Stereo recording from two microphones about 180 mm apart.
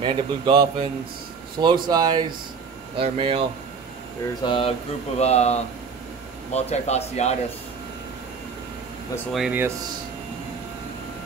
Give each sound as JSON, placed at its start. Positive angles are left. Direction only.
{"t": 0.0, "sound": "a man's voice", "side_deg": -25}
{"t": 4.5, "sound": "speech", "side_deg": 30}
{"t": 9.3, "sound": "speech", "side_deg": -5}